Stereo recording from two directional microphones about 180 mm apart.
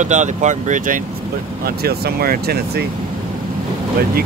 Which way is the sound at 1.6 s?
60° right (ahead or behind).